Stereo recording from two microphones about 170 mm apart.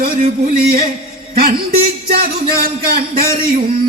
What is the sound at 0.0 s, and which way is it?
Speech, 60° right (ahead or behind).